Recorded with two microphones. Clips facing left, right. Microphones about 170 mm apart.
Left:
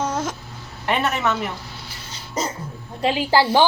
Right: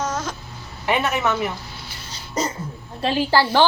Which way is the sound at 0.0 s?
30° left (ahead or behind).